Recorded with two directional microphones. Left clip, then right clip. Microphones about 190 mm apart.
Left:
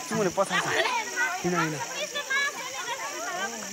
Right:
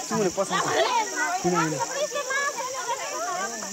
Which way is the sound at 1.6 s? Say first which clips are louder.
Right 4 dB; 30° right (ahead or behind).